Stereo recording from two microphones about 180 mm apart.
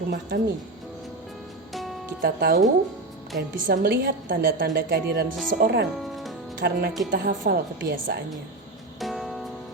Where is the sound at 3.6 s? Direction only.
55° right (ahead or behind); by 8.2 s 70° right (ahead or behind).